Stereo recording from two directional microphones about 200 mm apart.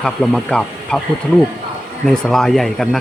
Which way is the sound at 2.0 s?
Centre (ahead or behind).